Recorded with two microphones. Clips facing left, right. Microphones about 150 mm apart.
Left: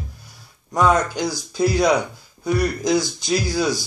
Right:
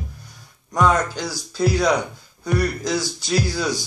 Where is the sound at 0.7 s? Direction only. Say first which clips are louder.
Left 1 dB; 10° left (ahead or behind).